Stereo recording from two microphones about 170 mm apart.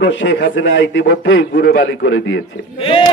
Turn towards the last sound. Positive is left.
turn(degrees=30)  # may be behind; listen again after turning